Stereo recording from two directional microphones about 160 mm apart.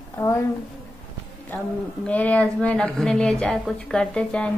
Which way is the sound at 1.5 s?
10° left (ahead or behind).